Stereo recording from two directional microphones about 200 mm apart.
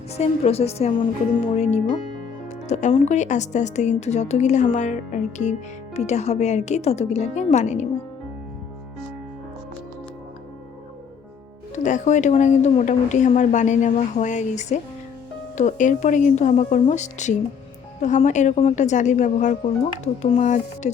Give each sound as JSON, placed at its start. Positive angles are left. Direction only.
{"t": 0.1, "sound": "speech", "side_deg": 30}
{"t": 11.7, "sound": "speech", "side_deg": 40}